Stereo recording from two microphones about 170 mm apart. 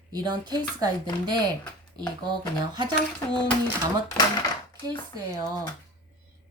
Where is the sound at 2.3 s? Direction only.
25° right (ahead or behind).